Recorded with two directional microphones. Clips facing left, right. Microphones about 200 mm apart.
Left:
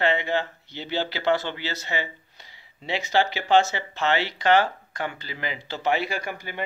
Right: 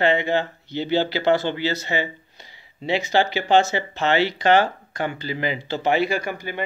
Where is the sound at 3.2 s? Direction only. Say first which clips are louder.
Right 1 dB; 25° right (ahead or behind).